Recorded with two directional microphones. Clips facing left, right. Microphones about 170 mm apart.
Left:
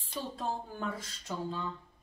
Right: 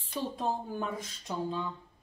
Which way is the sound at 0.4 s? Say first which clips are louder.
Right 3 dB; 15° right (ahead or behind).